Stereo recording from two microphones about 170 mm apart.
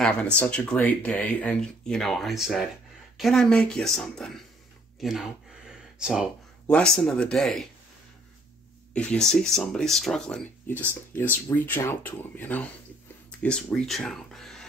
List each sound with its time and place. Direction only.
0.0 s speech: 5° left (ahead or behind)
5.0 s a sound: centre (ahead or behind)
6.7 s speech: 5° left (ahead or behind)
8.9 s speech: 5° left (ahead or behind)
11.5 s speech: 10° left (ahead or behind)